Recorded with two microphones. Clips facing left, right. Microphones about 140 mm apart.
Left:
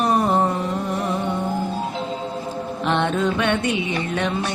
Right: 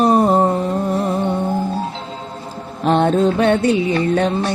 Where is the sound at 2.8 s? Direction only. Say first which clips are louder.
Right 7 dB; 40° right (ahead or behind).